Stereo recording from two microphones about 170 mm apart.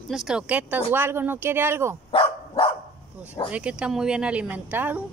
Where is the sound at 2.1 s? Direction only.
30° left (ahead or behind).